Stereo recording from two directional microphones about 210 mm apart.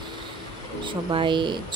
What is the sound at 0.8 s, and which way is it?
Speech, 25° right (ahead or behind).